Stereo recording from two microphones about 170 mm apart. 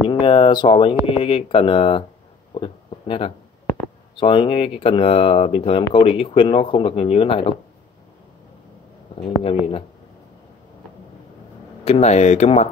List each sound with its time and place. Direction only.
0.1 s speech: 30° left (ahead or behind)
2.5 s a sound: 30° left (ahead or behind)
4.2 s speech: 30° left (ahead or behind)
9.4 s speech: 35° left (ahead or behind)
11.8 s speech: 40° left (ahead or behind)